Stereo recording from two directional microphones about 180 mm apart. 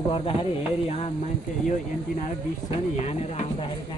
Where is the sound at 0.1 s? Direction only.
30° left (ahead or behind).